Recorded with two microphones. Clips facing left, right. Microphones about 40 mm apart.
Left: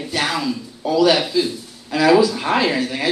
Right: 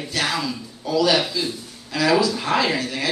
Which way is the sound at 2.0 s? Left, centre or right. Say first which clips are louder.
Left 5 dB; left.